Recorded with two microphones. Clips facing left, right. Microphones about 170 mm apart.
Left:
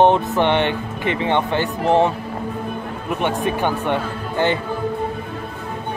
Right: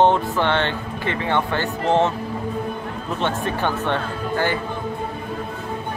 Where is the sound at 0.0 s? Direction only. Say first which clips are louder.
Left 2 dB; 20° left (ahead or behind).